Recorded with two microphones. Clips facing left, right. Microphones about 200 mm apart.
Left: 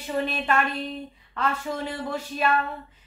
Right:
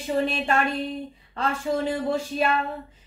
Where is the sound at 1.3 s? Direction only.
30° right (ahead or behind).